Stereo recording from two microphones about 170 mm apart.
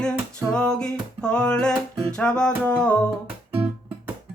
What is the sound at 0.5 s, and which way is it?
Music, 5° left (ahead or behind).